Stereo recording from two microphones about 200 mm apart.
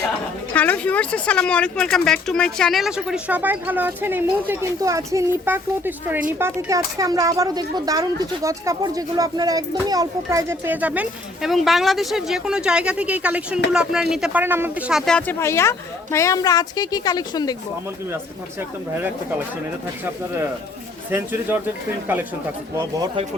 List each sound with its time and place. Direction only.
0.5 s a woman's voice: 10° left (ahead or behind)
18.9 s speech: 10° right (ahead or behind)
21.1 s speech: 10° right (ahead or behind)